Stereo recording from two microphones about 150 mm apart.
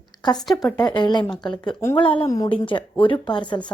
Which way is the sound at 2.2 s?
25° left (ahead or behind).